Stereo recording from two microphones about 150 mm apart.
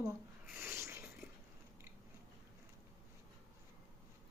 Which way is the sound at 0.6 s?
15° right (ahead or behind).